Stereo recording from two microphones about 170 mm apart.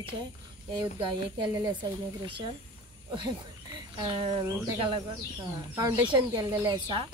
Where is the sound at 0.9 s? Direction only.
30° right (ahead or behind).